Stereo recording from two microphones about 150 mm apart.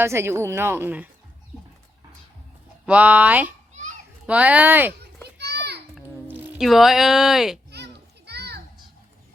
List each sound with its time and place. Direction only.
0.0 s speech: 15° right (ahead or behind)
2.8 s speech: 10° right (ahead or behind)
5.5 s children playing: 90° right
6.2 s a sound: 15° right (ahead or behind)
6.6 s speech: centre (ahead or behind)
8.3 s children playing: 90° right